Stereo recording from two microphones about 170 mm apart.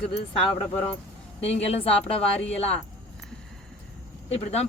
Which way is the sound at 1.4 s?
35° left (ahead or behind).